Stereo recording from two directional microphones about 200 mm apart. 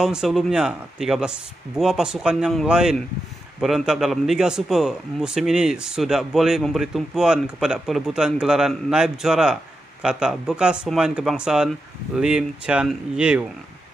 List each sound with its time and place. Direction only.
0.0 s a man's voice: 5° right (ahead or behind)